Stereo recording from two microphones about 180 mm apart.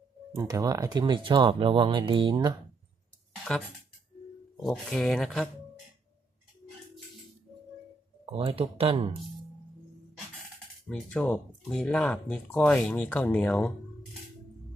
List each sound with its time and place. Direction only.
0.3 s speech: 20° right (ahead or behind)
4.5 s speech: 5° left (ahead or behind)
8.3 s speech: 30° right (ahead or behind)
10.8 s speech: 5° left (ahead or behind)